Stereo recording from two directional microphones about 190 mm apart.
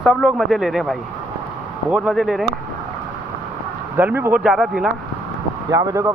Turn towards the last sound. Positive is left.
turn(degrees=-15)  # may be behind; listen again after turning